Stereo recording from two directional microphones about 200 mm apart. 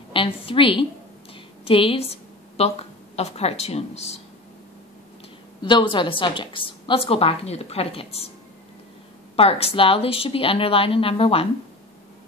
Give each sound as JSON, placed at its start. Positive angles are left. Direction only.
{"t": 0.1, "sound": "a woman's voice", "side_deg": 25}
{"t": 5.6, "sound": "a woman's voice", "side_deg": 25}
{"t": 9.4, "sound": "a woman's voice", "side_deg": 30}